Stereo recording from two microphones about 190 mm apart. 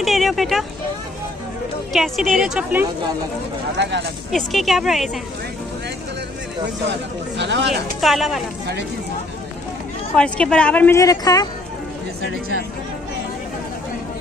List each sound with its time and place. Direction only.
0.0 s speech: centre (ahead or behind)
1.9 s a woman's voice: centre (ahead or behind)
3.7 s speech: 65° right (ahead or behind)
4.3 s a woman's voice: centre (ahead or behind)
6.9 s speech: 65° right (ahead or behind)
8.0 s a woman's voice: centre (ahead or behind)
10.1 s a woman's voice: 5° left (ahead or behind)